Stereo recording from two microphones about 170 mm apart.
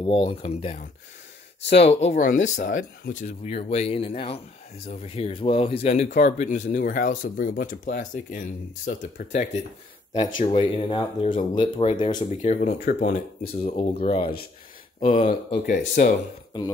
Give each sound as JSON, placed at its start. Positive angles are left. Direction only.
{"t": 0.0, "sound": "speech", "side_deg": 35}
{"t": 10.1, "sound": "speech", "side_deg": 35}
{"t": 12.3, "sound": "speech", "side_deg": 45}
{"t": 12.8, "sound": "speech", "side_deg": 60}
{"t": 13.6, "sound": "speech", "side_deg": 35}
{"t": 15.6, "sound": "speech", "side_deg": 50}